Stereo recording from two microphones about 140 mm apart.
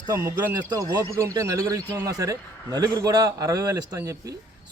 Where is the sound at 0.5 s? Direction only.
25° right (ahead or behind).